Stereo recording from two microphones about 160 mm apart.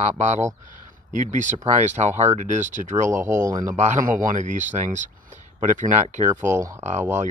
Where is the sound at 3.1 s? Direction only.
15° right (ahead or behind).